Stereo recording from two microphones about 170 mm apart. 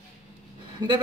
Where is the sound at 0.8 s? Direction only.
25° right (ahead or behind).